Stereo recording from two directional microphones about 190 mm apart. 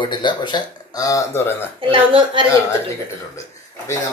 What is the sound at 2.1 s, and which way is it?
Speech, 25° right (ahead or behind).